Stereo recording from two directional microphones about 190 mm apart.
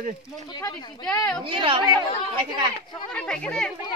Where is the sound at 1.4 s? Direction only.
25° right (ahead or behind).